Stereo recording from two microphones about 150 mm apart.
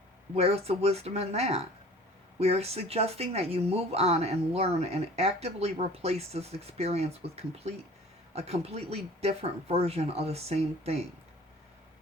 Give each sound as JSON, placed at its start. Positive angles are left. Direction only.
{"t": 0.3, "sound": "speech", "side_deg": -45}